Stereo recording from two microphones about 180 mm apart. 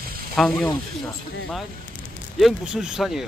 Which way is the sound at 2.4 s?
Centre (ahead or behind).